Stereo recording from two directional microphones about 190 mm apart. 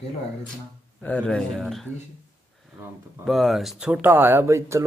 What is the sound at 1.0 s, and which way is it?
Speech, 5° left (ahead or behind).